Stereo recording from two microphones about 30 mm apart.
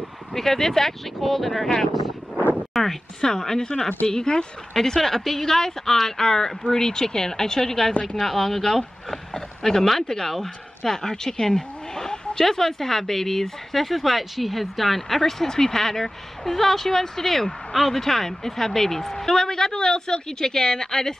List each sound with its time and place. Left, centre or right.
0.3 s speech: centre
2.7 s speech: centre; by 4.5 s left
4.7 s speech: centre
7.9 s speech: left
8.2 s speech: centre
12.4 s speech: centre